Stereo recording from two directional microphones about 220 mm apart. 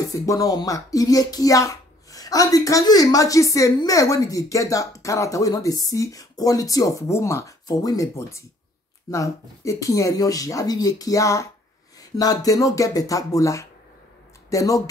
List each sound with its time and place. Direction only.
0.1 s speech: 15° left (ahead or behind)